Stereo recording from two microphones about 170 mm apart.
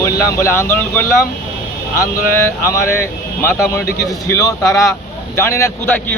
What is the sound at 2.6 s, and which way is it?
Speech, 15° left (ahead or behind).